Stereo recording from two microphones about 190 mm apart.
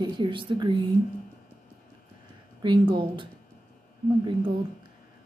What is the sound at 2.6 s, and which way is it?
Speech, 25° right (ahead or behind).